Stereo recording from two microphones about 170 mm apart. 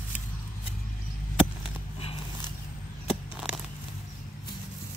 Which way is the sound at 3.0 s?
5° right (ahead or behind).